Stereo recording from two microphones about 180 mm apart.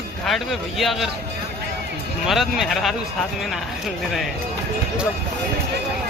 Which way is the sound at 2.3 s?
Centre (ahead or behind).